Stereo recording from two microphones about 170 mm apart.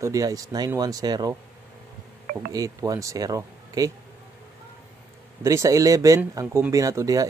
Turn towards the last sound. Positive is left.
turn(degrees=-20)  # may be behind; listen again after turning